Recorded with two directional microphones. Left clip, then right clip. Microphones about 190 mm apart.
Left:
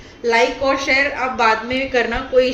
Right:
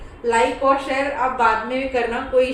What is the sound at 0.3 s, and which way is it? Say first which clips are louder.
A child's voice: left 1 dB; 30° left (ahead or behind).